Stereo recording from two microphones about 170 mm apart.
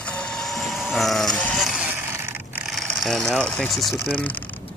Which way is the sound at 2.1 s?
10° right (ahead or behind).